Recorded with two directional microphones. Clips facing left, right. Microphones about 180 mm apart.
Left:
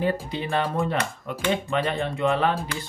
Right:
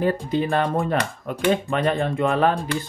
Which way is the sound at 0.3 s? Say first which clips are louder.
Right 5 dB; 45° right (ahead or behind).